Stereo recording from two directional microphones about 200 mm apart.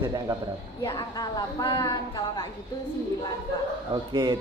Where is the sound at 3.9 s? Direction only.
20° right (ahead or behind).